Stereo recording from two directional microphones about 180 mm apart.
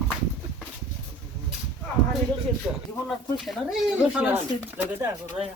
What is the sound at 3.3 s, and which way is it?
Speech, centre (ahead or behind).